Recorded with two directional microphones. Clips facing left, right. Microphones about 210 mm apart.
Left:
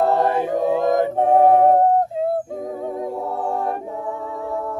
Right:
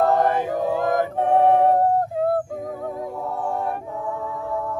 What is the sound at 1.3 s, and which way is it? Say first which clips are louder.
A capella: left 3 dB; 40° left (ahead or behind).